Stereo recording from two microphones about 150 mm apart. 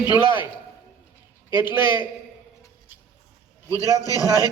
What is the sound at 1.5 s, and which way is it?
Speech, 30° left (ahead or behind).